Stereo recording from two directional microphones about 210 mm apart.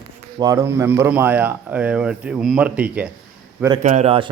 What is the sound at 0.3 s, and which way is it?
A man's voice, 15° right (ahead or behind).